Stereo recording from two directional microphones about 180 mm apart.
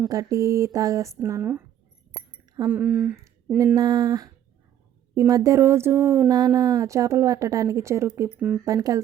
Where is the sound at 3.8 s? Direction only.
20° right (ahead or behind).